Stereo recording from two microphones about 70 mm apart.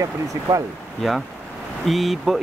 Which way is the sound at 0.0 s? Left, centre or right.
Right.